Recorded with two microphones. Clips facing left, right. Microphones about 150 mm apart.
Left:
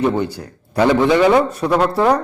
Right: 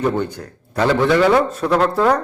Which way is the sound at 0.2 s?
10° left (ahead or behind).